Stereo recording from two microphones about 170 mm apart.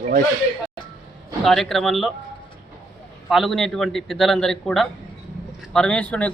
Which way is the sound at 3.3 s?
Centre (ahead or behind).